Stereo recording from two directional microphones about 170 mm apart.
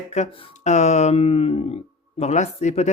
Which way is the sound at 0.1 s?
45° left (ahead or behind).